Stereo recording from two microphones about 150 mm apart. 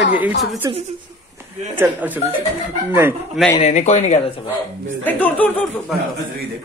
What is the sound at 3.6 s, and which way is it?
Speech, 50° left (ahead or behind).